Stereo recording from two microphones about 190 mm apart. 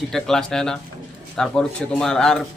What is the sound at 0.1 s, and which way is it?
A man's voice, centre (ahead or behind).